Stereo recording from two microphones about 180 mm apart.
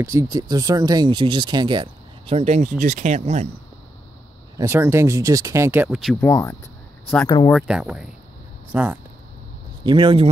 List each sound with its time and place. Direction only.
0.0 s speech: 15° right (ahead or behind); by 3.4 s 40° right (ahead or behind)
4.6 s speech: 15° right (ahead or behind)
6.2 s speech: 15° left (ahead or behind)
7.5 s speech: 5° right (ahead or behind)
9.8 s speech: 25° right (ahead or behind)